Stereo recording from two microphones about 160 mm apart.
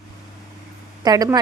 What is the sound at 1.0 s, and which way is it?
Speech, 25° right (ahead or behind).